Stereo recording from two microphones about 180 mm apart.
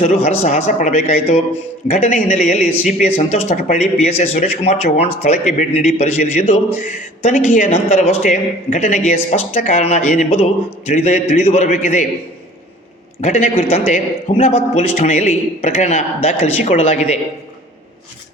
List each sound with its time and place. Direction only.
0.0 s a man's voice: 40° left (ahead or behind)
13.2 s a man's voice: 40° left (ahead or behind)